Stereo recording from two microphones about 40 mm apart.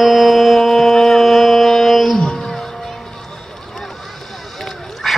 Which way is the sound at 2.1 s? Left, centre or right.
Centre.